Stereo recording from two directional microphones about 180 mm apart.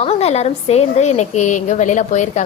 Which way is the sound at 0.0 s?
35° left (ahead or behind).